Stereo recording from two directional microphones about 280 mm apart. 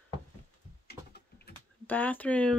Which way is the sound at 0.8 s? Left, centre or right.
Left.